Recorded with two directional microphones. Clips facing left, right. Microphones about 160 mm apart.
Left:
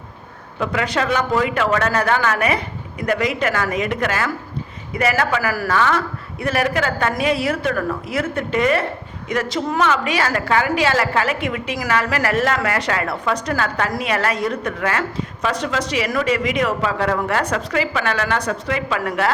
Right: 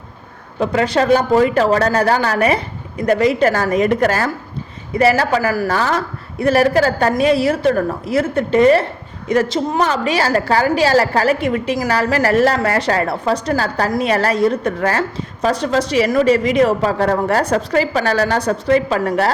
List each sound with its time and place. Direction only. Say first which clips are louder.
0.6 s a woman's voice: right 5 dB; 35° right (ahead or behind)